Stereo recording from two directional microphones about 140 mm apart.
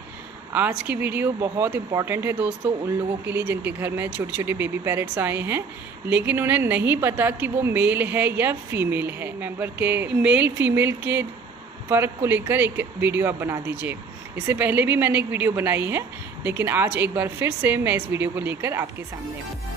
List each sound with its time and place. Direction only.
0.5 s a woman's voice: 10° right (ahead or behind)